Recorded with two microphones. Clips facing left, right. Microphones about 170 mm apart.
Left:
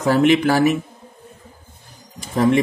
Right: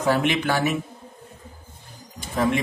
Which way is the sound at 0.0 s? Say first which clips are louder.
Left 7 dB; 40° left (ahead or behind).